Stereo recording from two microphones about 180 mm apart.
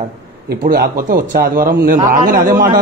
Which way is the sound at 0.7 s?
50° right (ahead or behind).